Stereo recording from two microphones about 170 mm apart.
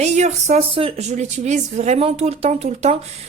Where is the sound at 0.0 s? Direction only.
40° right (ahead or behind).